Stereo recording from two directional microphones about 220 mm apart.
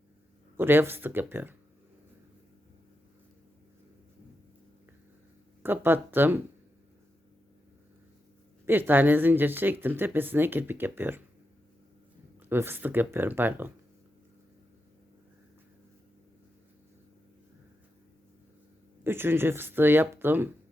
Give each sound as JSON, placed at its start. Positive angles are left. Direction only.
{"t": 0.5, "sound": "speech", "side_deg": -10}
{"t": 5.6, "sound": "speech", "side_deg": -10}
{"t": 8.6, "sound": "speech", "side_deg": -10}
{"t": 12.5, "sound": "speech", "side_deg": -10}
{"t": 19.0, "sound": "speech", "side_deg": -10}